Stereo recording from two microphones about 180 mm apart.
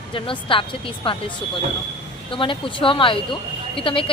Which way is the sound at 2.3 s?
30° left (ahead or behind).